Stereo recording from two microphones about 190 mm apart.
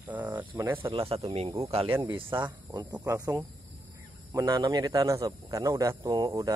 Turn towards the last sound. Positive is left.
turn(degrees=-25)  # may be behind; listen again after turning